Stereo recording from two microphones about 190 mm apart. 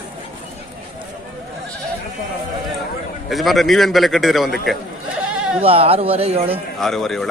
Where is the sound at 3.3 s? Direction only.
Centre (ahead or behind).